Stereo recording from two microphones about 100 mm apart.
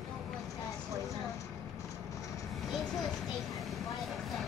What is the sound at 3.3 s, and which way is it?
Vehicle, centre (ahead or behind).